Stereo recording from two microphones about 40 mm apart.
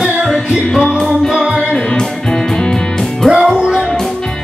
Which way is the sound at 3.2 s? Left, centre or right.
Centre.